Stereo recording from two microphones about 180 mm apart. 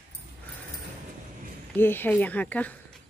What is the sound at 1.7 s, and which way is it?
A woman's voice, 10° left (ahead or behind).